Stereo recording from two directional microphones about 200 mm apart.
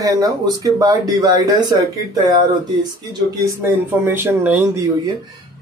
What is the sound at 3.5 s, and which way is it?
Speech, 10° right (ahead or behind).